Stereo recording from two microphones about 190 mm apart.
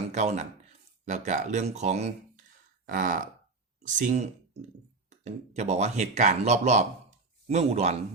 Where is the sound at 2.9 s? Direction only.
45° right (ahead or behind).